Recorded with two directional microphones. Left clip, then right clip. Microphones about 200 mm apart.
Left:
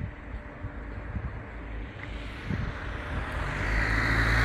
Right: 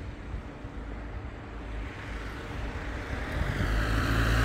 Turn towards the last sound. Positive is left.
turn(degrees=-30)  # may be behind; listen again after turning